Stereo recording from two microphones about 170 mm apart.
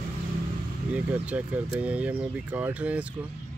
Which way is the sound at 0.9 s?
10° right (ahead or behind).